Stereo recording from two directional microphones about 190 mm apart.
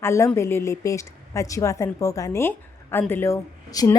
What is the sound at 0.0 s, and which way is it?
A woman's voice, 15° left (ahead or behind).